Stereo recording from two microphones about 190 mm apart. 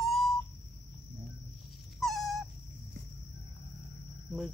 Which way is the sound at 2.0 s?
Centre (ahead or behind).